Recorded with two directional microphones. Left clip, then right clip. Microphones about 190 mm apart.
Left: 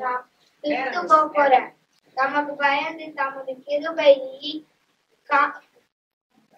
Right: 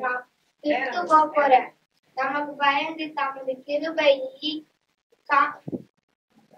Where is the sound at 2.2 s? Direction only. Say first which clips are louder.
Left 4 dB; 25° right (ahead or behind).